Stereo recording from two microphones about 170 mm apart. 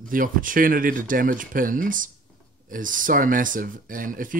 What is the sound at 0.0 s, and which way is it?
Speech, 55° right (ahead or behind).